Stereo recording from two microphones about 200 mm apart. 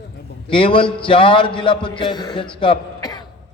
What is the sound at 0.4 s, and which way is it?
A man's voice, 25° left (ahead or behind).